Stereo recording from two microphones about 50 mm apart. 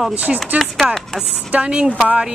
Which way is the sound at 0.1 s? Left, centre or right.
Right.